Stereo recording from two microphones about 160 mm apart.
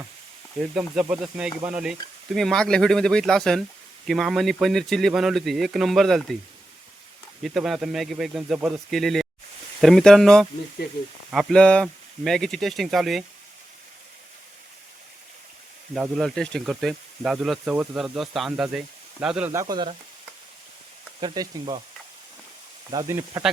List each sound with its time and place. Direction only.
0.7 s speech: 5° right (ahead or behind)
7.4 s speech: centre (ahead or behind)
16.0 s speech: centre (ahead or behind)
19.5 s frying: 20° right (ahead or behind)
21.2 s frying: 30° right (ahead or behind)
22.9 s speech: 20° right (ahead or behind)